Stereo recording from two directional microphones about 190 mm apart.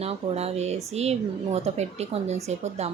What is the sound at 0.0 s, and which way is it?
Speech, 30° right (ahead or behind).